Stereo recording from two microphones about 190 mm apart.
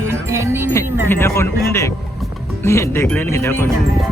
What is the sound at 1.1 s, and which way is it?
Speech, 10° left (ahead or behind).